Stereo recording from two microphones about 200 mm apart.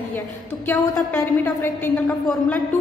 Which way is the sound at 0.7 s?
20° left (ahead or behind).